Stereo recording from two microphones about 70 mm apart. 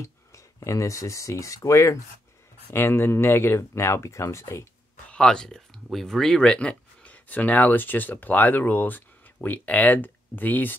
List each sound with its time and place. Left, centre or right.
0.0 s a sound: left
0.7 s speech: left
2.7 s speech: left
5.1 s speech: centre